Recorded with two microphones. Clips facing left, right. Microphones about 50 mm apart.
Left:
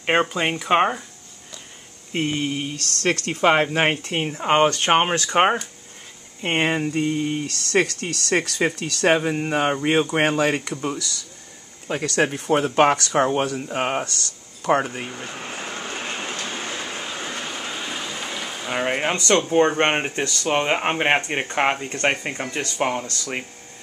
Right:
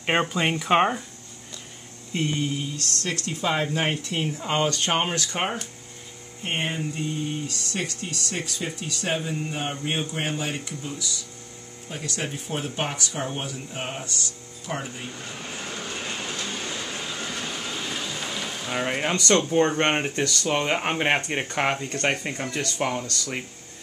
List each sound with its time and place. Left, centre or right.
0.0 s speech: centre
2.1 s mantra: left
3.0 s speech: left
6.4 s speech: left
11.9 s speech: left
14.7 s speech: left
15.0 s speech: left